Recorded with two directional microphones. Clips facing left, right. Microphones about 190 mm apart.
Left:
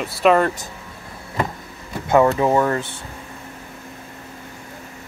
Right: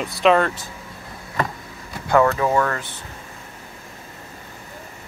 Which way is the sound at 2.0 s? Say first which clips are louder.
Left 2 dB; 20° left (ahead or behind).